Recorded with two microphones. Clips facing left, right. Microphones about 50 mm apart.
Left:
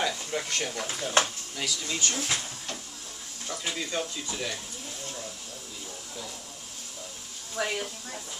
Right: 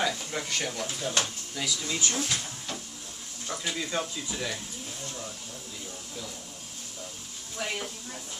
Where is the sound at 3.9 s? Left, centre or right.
Centre.